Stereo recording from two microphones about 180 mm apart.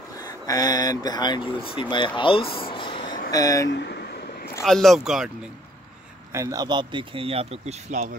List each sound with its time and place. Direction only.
0.2 s speech: 20° left (ahead or behind)
3.6 s vehicle: 70° left (ahead or behind)
4.6 s speech: centre (ahead or behind)
6.3 s a man's voice: 20° right (ahead or behind); by 8.1 s 40° right (ahead or behind)